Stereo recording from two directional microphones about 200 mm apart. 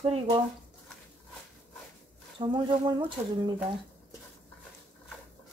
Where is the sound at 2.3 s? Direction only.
25° right (ahead or behind).